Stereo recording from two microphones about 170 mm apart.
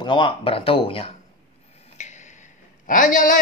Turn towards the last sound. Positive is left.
turn(degrees=50)  # may be behind; listen again after turning